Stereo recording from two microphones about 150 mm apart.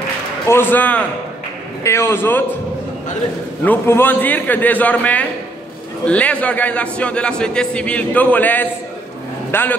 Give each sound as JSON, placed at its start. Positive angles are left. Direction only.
{"t": 0.5, "sound": "a man's voice", "side_deg": 15}
{"t": 3.6, "sound": "a man's voice", "side_deg": 15}